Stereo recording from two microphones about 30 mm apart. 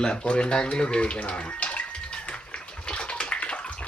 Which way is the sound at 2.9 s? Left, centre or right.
Left.